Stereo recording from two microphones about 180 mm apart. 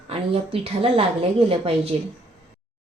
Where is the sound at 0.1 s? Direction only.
35° right (ahead or behind).